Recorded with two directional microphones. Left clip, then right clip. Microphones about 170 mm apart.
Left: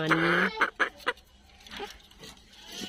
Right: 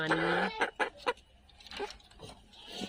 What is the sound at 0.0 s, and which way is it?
Chicken, 20° left (ahead or behind).